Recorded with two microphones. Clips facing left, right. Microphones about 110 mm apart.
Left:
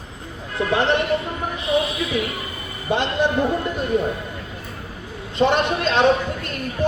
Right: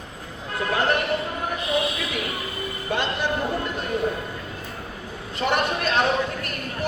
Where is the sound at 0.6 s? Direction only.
25° left (ahead or behind).